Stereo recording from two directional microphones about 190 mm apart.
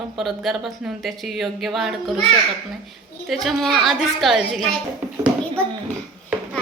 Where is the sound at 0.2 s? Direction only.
Centre (ahead or behind).